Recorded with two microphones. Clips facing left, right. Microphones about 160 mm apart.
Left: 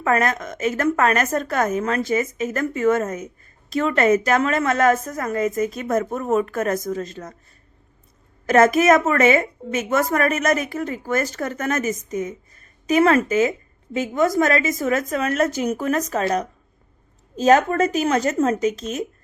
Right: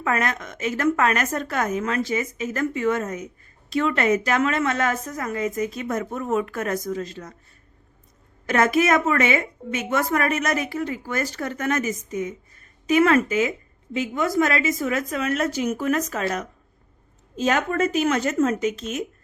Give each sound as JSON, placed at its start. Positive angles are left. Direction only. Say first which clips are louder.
{"t": 0.0, "sound": "a woman's voice", "louder": "left 4 dB", "side_deg": 45}
{"t": 8.4, "sound": "a woman's voice", "louder": "left 5 dB", "side_deg": 45}